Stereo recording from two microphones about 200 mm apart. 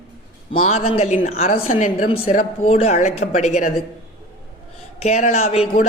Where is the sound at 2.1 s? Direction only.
30° left (ahead or behind).